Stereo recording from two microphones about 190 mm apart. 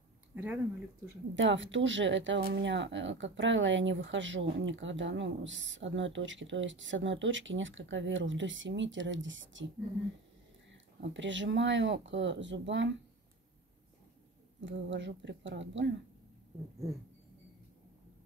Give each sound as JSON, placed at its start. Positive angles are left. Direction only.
{"t": 1.3, "sound": "a woman's voice", "side_deg": -80}
{"t": 11.0, "sound": "speech", "side_deg": -75}
{"t": 14.6, "sound": "speech", "side_deg": -75}